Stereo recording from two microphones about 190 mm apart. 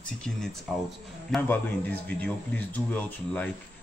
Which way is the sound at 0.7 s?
Centre (ahead or behind).